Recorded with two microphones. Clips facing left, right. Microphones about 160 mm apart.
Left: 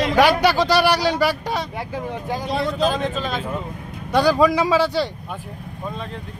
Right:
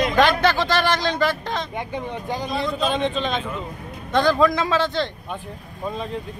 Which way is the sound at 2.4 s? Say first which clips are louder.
Left 3 dB; 80° left.